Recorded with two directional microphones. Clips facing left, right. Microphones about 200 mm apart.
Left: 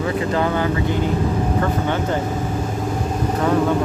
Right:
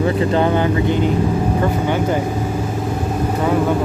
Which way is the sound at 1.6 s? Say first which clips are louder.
Right 3 dB; 10° right (ahead or behind).